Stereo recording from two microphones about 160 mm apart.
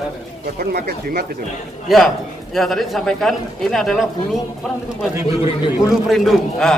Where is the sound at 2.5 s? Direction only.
Centre (ahead or behind).